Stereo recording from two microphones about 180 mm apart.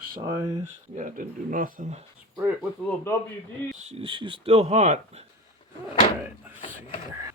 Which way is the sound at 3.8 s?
35° right (ahead or behind).